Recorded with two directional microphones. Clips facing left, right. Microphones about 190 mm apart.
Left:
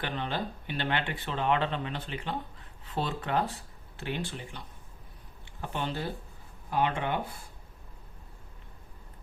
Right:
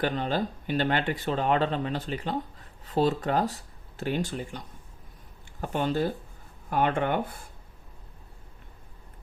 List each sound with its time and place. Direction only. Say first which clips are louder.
0.0 s speech: right 6 dB; 40° right (ahead or behind)